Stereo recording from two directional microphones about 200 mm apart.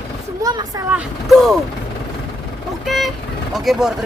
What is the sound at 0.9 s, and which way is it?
Speech, centre (ahead or behind).